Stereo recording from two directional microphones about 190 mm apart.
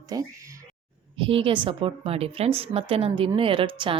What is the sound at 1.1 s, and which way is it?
A woman's voice, 30° right (ahead or behind).